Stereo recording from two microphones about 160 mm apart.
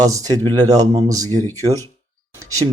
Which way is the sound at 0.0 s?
20° right (ahead or behind).